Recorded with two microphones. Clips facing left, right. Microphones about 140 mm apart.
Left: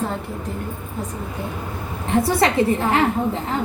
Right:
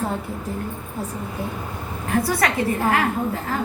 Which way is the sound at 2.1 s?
25° left (ahead or behind).